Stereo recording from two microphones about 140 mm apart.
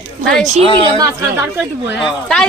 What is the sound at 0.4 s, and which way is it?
Speech, 50° right (ahead or behind).